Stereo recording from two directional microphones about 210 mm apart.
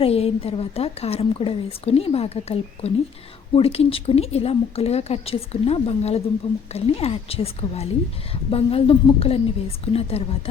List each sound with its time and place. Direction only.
0.0 s a woman's voice: 30° left (ahead or behind)